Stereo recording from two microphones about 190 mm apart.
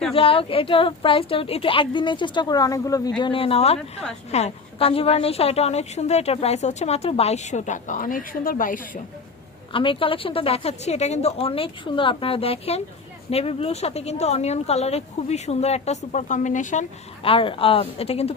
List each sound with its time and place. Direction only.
0.1 s a woman's voice: 30° left (ahead or behind); by 9.0 s 45° left (ahead or behind)
9.7 s a woman's voice: 25° left (ahead or behind)
17.2 s a woman's voice: 30° left (ahead or behind)